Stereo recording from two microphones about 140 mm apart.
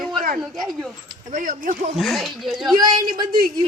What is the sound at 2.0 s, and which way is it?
Speech, centre (ahead or behind).